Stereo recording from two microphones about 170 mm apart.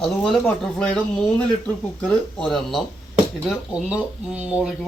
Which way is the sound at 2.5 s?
Centre (ahead or behind).